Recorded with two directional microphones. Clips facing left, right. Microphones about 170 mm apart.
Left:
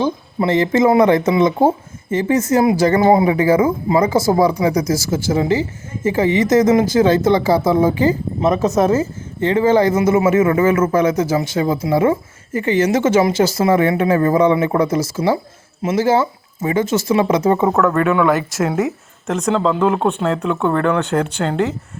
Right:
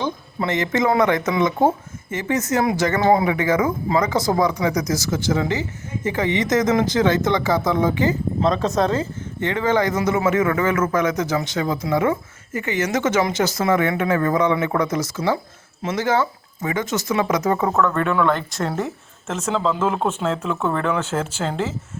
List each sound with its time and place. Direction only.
0.4 s speech: 30° left (ahead or behind)
8.5 s speech: centre (ahead or behind)
9.5 s speech: 30° left (ahead or behind)
17.7 s speech: 5° left (ahead or behind)